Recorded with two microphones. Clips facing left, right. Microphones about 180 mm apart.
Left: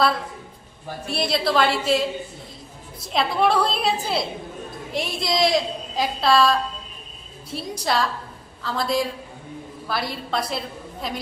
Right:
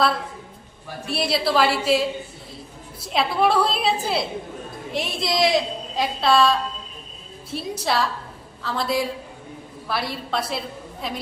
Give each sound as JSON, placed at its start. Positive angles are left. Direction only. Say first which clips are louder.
{"t": 1.0, "sound": "a woman's voice", "louder": "even", "side_deg": -5}
{"t": 3.1, "sound": "a woman's voice", "louder": "even", "side_deg": 0}